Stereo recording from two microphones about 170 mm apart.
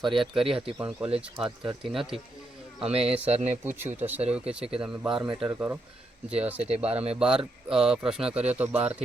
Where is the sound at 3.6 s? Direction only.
10° right (ahead or behind).